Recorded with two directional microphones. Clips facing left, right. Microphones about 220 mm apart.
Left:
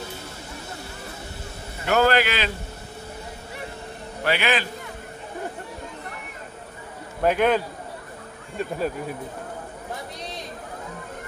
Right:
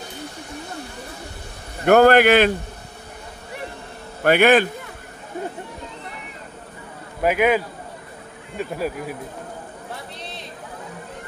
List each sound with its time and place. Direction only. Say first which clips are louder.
1.9 s a man's voice: right 8 dB; 55° right (ahead or behind)
4.2 s a man's voice: right 9 dB; 50° right (ahead or behind)
7.2 s speech: right 2 dB; 10° right (ahead or behind)
10.1 s a sound: left 1 dB; 15° left (ahead or behind)